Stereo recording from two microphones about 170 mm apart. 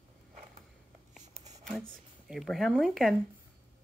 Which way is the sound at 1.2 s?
40° right (ahead or behind).